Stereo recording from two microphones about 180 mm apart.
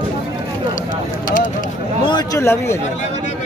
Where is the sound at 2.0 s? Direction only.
20° left (ahead or behind).